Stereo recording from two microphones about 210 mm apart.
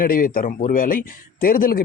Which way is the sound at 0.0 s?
40° left (ahead or behind).